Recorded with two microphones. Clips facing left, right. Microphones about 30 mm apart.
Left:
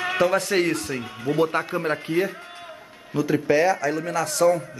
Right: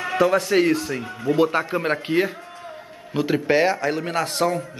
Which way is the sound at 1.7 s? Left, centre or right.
Right.